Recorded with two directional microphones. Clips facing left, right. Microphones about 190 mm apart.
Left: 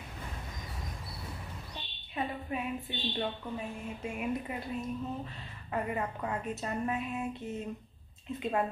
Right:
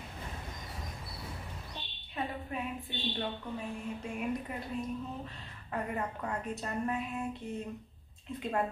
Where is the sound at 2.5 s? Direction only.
5° left (ahead or behind).